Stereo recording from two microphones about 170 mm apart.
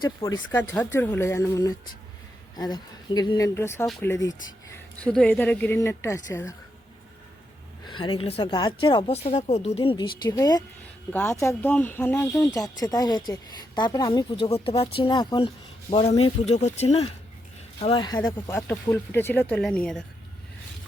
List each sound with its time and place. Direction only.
0.2 s a woman's voice: 20° left (ahead or behind)
5.0 s speech: 5° left (ahead or behind)
7.9 s a woman's voice: 30° left (ahead or behind)
15.9 s a woman's voice: 35° left (ahead or behind)
18.5 s speech: 10° left (ahead or behind)